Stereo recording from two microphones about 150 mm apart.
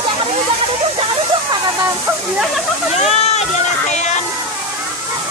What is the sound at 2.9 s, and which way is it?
Speech, 45° left (ahead or behind).